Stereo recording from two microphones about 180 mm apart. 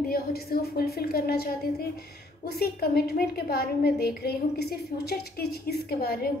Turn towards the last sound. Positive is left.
turn(degrees=60)  # may be behind; listen again after turning